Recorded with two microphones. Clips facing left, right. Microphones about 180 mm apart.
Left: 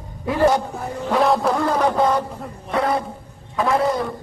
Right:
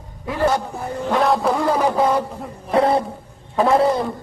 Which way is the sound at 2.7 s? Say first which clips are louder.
Right 4 dB; 30° right (ahead or behind).